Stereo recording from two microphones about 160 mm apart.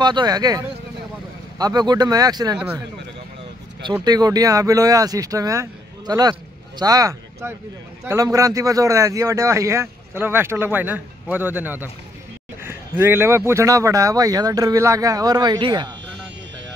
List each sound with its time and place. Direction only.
0.0 s speech: 25° right (ahead or behind)
3.8 s a man's voice: 25° right (ahead or behind)